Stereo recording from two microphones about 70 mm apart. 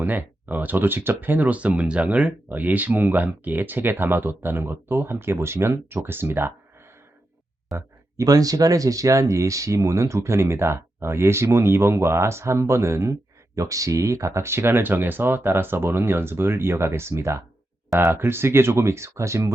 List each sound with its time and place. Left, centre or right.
0.0 s speech: right
8.1 s speech: right
13.6 s speech: right